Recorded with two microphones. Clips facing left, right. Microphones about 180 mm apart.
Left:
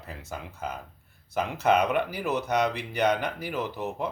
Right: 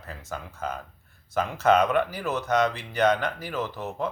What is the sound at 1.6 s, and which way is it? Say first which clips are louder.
Speech: right 2 dB; 10° left (ahead or behind).